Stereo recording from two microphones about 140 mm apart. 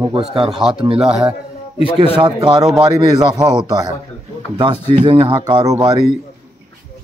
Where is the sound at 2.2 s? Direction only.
35° right (ahead or behind).